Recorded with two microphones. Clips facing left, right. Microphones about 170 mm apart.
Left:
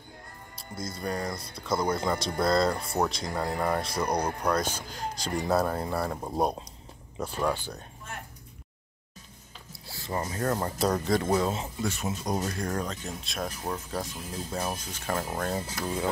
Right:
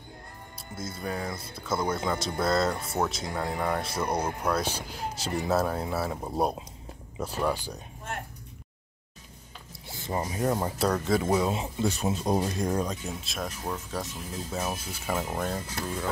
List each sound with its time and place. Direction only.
0.6 s speech: 5° right (ahead or behind)
9.7 s a sound: 20° right (ahead or behind)
10.8 s speech: centre (ahead or behind)
11.8 s speech: 30° right (ahead or behind)
12.4 s speech: 20° right (ahead or behind)